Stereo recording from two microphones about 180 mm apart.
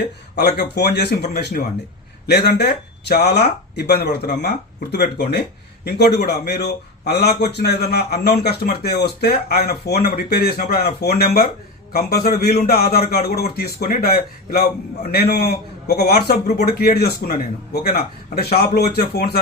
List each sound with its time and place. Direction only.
0.3 s a man's voice: 60° left (ahead or behind)
16.3 s speech: 35° left (ahead or behind)
16.6 s a man's voice: 60° left (ahead or behind)